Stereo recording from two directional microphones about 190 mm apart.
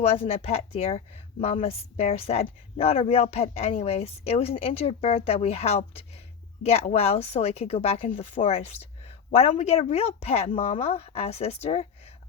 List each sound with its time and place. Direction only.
0.0 s speech: 30° left (ahead or behind)